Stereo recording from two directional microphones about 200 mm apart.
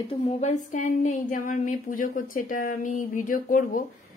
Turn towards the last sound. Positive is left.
turn(degrees=40)  # may be behind; listen again after turning